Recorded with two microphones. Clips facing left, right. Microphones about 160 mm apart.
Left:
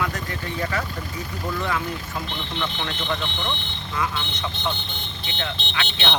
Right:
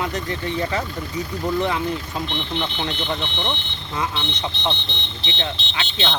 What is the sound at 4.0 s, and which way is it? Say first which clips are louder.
Speech: right 2 dB; 20° right (ahead or behind).